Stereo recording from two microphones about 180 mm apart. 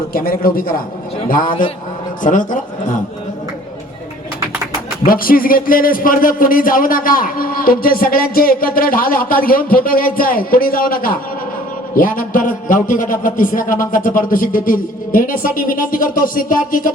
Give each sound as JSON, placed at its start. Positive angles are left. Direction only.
{"t": 0.1, "sound": "a man's voice", "side_deg": 55}
{"t": 5.0, "sound": "a man's voice", "side_deg": 55}